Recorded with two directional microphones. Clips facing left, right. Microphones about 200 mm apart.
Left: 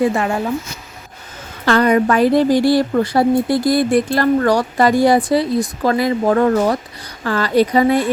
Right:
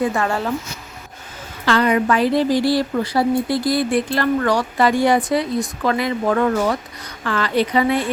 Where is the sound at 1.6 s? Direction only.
45° left (ahead or behind).